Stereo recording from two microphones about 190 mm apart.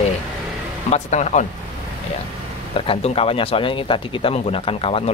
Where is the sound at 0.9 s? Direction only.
35° left (ahead or behind).